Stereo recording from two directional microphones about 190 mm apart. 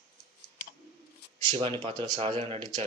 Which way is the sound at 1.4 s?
30° right (ahead or behind).